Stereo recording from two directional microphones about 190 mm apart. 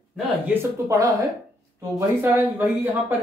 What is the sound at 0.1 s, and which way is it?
Speech, 15° right (ahead or behind).